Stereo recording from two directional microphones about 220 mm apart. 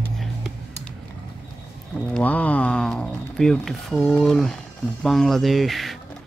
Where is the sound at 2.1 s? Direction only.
5° left (ahead or behind).